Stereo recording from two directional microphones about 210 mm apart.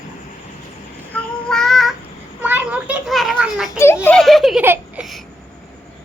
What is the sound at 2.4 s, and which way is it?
A child's voice, 10° right (ahead or behind).